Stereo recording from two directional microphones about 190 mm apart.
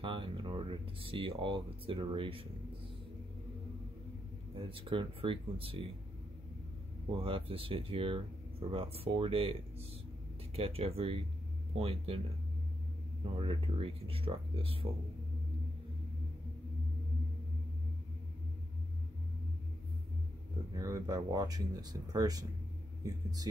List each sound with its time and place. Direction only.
0.0 s speech: 25° right (ahead or behind)
4.6 s speech: 25° right (ahead or behind)
7.2 s speech: 30° right (ahead or behind)
13.4 s speech: 30° right (ahead or behind)
20.7 s speech: 15° right (ahead or behind)